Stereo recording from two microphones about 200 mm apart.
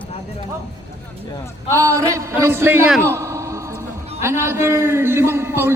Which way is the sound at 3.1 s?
15° right (ahead or behind).